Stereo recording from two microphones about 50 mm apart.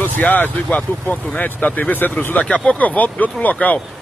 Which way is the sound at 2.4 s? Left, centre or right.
Left.